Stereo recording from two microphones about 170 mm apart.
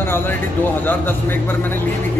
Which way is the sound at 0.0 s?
15° left (ahead or behind).